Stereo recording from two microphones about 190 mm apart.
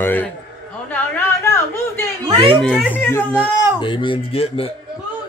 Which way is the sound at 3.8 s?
25° left (ahead or behind).